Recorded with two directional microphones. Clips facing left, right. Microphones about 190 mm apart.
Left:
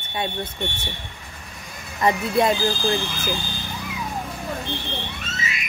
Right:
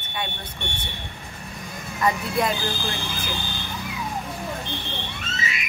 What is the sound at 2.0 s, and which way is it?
Speech, 25° left (ahead or behind).